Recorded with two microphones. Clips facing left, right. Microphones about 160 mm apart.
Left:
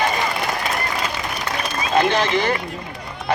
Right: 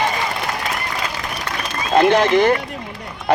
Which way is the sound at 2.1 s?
55° right (ahead or behind).